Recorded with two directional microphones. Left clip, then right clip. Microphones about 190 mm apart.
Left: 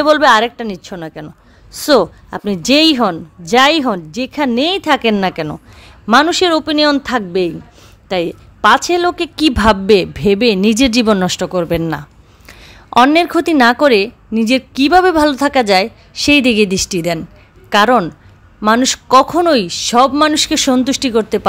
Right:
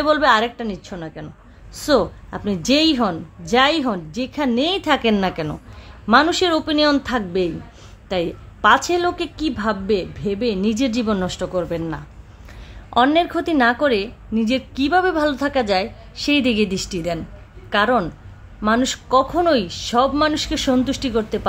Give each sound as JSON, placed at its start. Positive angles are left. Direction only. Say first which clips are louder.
{"t": 0.0, "sound": "a woman's voice", "louder": "left 6 dB", "side_deg": 40}